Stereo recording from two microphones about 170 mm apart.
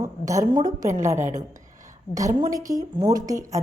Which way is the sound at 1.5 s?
45° right (ahead or behind).